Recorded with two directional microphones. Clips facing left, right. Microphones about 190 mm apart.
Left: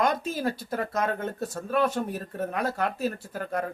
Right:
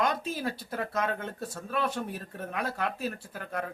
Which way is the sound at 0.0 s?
45° left (ahead or behind).